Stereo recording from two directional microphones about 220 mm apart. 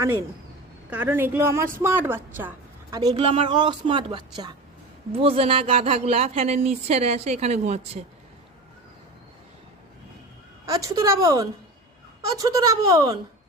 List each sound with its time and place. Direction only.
0.9 s a woman's voice: 10° right (ahead or behind); by 8.0 s 30° right (ahead or behind)
10.7 s a woman's voice: 15° right (ahead or behind)